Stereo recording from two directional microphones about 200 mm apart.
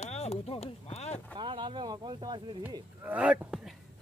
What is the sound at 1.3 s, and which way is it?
Speech, 25° right (ahead or behind).